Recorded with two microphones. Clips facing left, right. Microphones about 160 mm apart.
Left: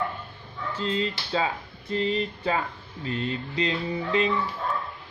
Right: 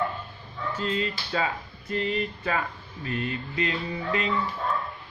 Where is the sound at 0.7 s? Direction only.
25° left (ahead or behind).